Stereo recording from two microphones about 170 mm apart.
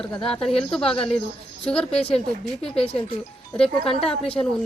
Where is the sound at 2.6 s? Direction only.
35° left (ahead or behind).